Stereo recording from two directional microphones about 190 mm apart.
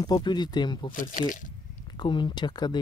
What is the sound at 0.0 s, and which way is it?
Speech, 20° left (ahead or behind).